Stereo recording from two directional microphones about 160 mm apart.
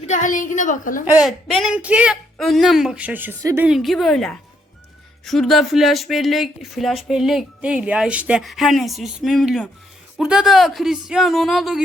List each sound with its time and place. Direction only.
0.1 s a woman's voice: 50° left (ahead or behind)
1.0 s a woman's voice: 5° right (ahead or behind)
3.7 s speech: centre (ahead or behind)